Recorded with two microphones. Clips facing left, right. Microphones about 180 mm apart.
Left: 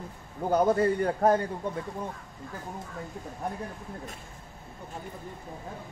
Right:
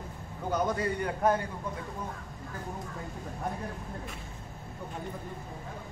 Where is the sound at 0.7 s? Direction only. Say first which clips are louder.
Left 6 dB; 40° left (ahead or behind).